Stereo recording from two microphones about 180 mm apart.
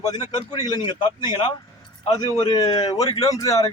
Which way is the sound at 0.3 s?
20° left (ahead or behind).